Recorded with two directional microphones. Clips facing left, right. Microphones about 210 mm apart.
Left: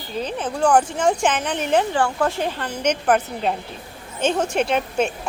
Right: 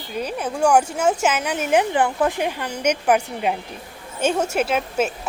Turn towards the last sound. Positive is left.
turn(degrees=-5)  # may be behind; listen again after turning